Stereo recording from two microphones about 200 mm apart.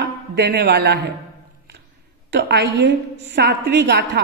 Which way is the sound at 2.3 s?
55° right (ahead or behind).